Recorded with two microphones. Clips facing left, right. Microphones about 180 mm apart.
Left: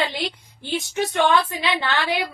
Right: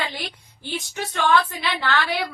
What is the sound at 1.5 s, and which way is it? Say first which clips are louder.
Speech: left 1 dB; 20° left (ahead or behind).